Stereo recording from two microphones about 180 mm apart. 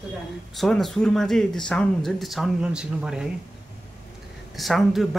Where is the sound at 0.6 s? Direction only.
Centre (ahead or behind).